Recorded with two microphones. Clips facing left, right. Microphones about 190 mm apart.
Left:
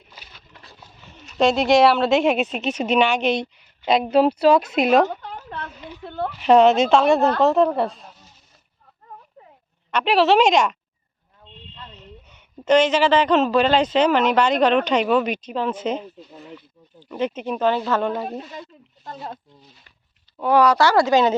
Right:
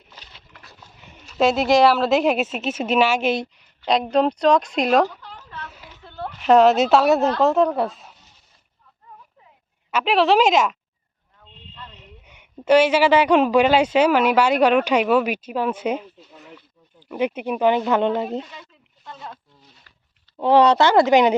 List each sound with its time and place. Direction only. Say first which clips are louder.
0.2 s a sound: left 1 dB; 10° left (ahead or behind)
1.2 s speech: even; centre (ahead or behind)
5.1 s a sound: left 6 dB; 60° left (ahead or behind)
6.4 s speech: even; centre (ahead or behind)
9.0 s a sound: left 4 dB; 50° left (ahead or behind)
9.9 s speech: left 1 dB; centre (ahead or behind)
12.3 s speech: right 1 dB; 10° right (ahead or behind)
17.1 s speech: right 1 dB; 10° right (ahead or behind)
19.0 s speech: left 4 dB; 40° left (ahead or behind)
20.3 s speech: right 2 dB; 25° right (ahead or behind)